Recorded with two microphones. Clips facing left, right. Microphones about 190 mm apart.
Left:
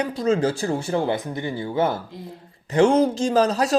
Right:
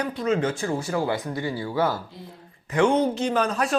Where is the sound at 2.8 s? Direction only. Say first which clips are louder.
Left 3 dB; 90° left.